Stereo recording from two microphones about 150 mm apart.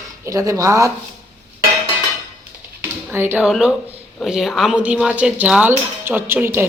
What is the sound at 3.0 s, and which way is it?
Speech, 15° right (ahead or behind).